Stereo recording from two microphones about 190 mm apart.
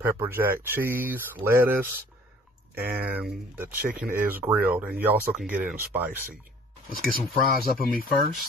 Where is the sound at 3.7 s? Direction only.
50° right (ahead or behind).